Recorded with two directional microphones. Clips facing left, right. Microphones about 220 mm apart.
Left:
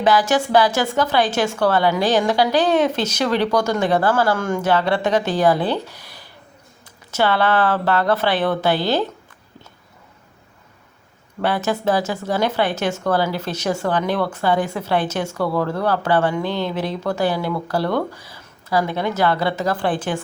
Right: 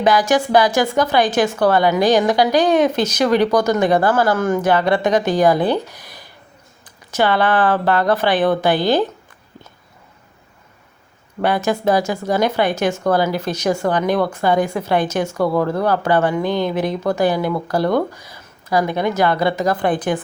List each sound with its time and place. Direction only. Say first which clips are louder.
0.0 s a woman's voice: right 2 dB; 15° right (ahead or behind)
11.4 s a woman's voice: right 3 dB; 15° right (ahead or behind)